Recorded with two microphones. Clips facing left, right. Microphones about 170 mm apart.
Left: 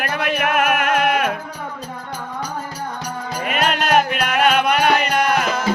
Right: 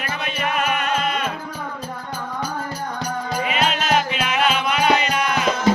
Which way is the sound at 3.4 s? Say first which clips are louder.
Left 3 dB; 55° left (ahead or behind).